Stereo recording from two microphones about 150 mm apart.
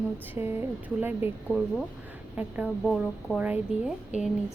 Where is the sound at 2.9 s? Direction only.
5° left (ahead or behind).